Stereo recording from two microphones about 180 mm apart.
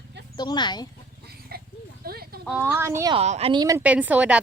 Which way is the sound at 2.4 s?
10° right (ahead or behind).